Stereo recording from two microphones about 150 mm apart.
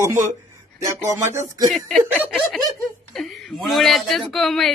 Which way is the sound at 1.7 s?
Centre (ahead or behind).